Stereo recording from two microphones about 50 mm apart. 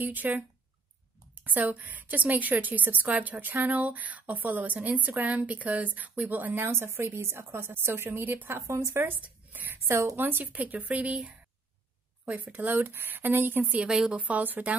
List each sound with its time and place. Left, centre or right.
0.0 s a woman's voice: right
1.3 s a sound: right
1.7 s a woman's voice: right
8.5 s speech: right
9.2 s a sound: right
9.7 s speech: right
10.1 s a woman's voice: right
11.1 s speech: centre
12.4 s a woman's voice: right
13.7 s speech: right
14.2 s a woman's voice: right